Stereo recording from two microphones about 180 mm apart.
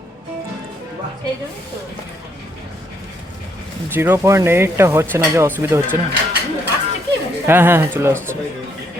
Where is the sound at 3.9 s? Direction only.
10° right (ahead or behind).